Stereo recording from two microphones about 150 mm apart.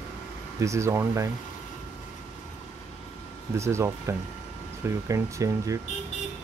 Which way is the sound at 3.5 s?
20° right (ahead or behind).